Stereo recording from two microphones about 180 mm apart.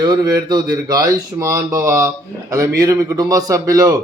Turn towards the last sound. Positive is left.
turn(degrees=-20)  # may be behind; listen again after turning